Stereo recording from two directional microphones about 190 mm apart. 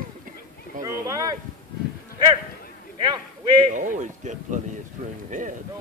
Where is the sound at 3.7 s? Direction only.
40° right (ahead or behind).